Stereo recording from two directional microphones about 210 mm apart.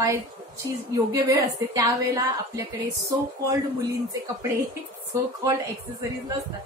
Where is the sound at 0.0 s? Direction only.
15° right (ahead or behind).